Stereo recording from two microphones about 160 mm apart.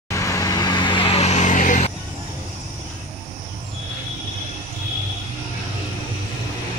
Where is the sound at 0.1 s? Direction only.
20° left (ahead or behind); by 1.9 s 55° left (ahead or behind).